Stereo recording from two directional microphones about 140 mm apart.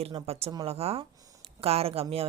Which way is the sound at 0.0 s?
45° right (ahead or behind).